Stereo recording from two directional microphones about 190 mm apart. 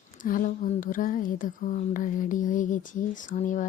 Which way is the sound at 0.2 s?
45° left (ahead or behind).